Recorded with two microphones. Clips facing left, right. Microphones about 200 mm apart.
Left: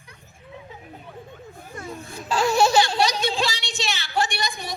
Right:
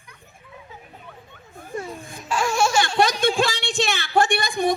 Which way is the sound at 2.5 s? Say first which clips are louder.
Left 3 dB; 35° left (ahead or behind).